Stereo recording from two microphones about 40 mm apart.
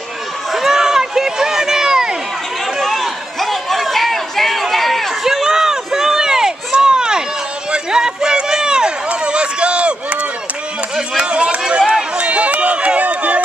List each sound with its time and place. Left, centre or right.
0.5 s run: centre
2.9 s a sound: centre
5.2 s run: centre; by 10.1 s right
11.2 s run: right